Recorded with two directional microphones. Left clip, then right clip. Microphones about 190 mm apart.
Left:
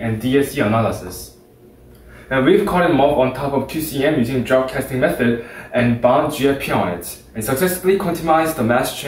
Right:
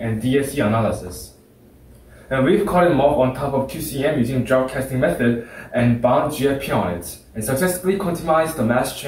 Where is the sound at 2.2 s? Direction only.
15° left (ahead or behind).